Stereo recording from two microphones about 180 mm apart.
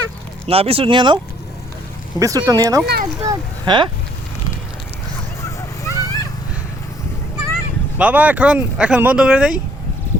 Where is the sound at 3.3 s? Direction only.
25° right (ahead or behind).